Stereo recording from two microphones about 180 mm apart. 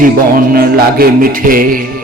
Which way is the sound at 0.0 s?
55° right (ahead or behind).